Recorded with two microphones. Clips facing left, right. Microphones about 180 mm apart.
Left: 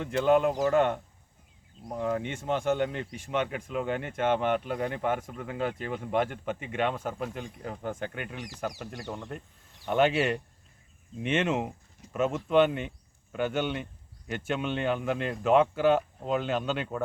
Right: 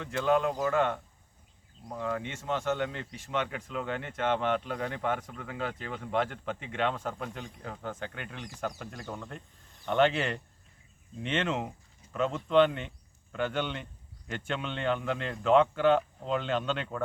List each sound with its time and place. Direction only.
0.0 s speech: 15° left (ahead or behind)
1.9 s speech: 20° left (ahead or behind)
9.8 s speech: 10° left (ahead or behind)